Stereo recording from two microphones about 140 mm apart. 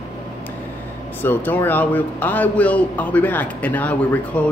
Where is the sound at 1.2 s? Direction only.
15° left (ahead or behind).